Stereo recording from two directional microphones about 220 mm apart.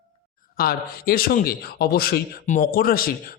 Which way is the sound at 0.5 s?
45° left (ahead or behind).